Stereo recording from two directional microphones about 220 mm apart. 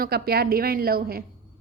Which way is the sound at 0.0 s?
45° right (ahead or behind).